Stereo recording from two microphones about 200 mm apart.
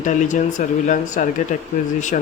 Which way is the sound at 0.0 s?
40° left (ahead or behind).